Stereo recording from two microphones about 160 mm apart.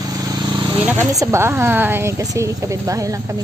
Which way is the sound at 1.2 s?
15° right (ahead or behind).